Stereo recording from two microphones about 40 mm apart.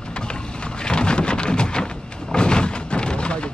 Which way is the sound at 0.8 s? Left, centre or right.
Left.